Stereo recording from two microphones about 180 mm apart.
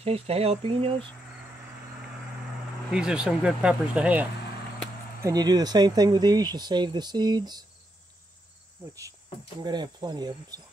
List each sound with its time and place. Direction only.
0.0 s speech: 35° right (ahead or behind)
2.9 s speech: 5° right (ahead or behind)
5.2 s speech: 20° right (ahead or behind)
9.6 s speech: 25° right (ahead or behind)